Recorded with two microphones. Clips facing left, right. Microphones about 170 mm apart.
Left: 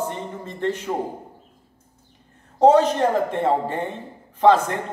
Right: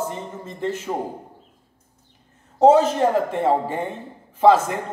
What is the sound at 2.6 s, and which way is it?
A man's voice, 5° right (ahead or behind).